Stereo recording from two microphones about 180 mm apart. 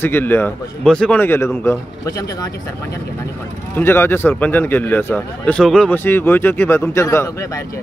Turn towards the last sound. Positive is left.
turn(degrees=20)  # may be behind; listen again after turning